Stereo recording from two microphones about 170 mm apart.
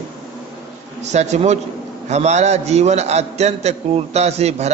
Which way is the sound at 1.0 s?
40° right (ahead or behind).